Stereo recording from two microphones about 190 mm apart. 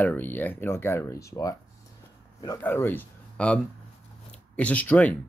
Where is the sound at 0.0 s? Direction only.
10° left (ahead or behind).